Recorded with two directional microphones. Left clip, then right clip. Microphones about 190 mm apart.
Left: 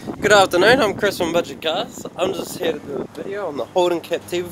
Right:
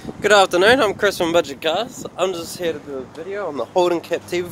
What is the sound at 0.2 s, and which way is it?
Speech, 5° right (ahead or behind).